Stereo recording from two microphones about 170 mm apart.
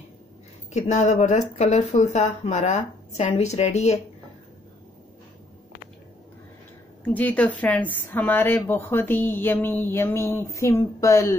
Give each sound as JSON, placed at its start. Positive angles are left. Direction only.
{"t": 0.7, "sound": "speech", "side_deg": 45}
{"t": 7.1, "sound": "speech", "side_deg": 10}